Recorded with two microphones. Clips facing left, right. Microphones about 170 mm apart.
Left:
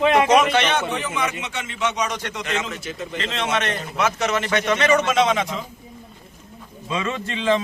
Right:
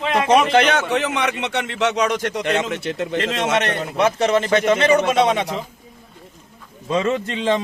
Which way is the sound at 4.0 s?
30° right (ahead or behind).